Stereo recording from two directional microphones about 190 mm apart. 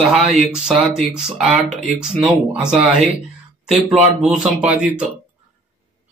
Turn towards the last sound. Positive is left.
turn(degrees=-5)  # may be behind; listen again after turning